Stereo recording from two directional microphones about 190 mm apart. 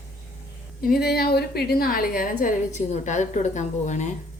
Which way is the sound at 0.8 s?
50° left (ahead or behind).